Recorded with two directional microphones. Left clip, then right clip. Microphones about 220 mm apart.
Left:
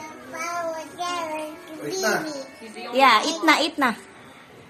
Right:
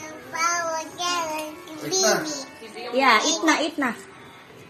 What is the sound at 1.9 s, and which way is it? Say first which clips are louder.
Music: right 3 dB; centre (ahead or behind).